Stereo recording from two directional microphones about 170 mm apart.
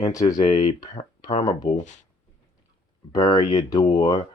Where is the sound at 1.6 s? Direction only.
45° left (ahead or behind).